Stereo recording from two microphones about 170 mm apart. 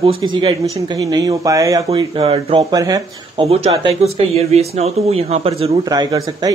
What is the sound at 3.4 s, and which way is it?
Speech, 35° right (ahead or behind).